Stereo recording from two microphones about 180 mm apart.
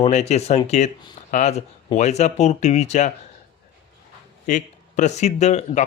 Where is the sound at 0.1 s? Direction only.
40° left (ahead or behind).